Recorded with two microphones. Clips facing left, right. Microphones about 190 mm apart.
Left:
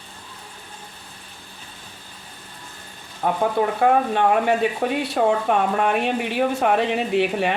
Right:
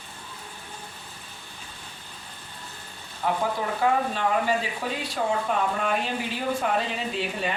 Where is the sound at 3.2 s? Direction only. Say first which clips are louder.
Left 6 dB; 50° left (ahead or behind).